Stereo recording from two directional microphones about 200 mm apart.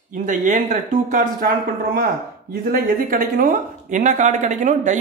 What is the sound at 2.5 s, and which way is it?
Speech, 45° right (ahead or behind).